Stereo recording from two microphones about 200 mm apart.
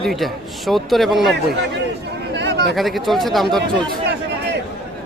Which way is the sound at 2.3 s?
60° right (ahead or behind).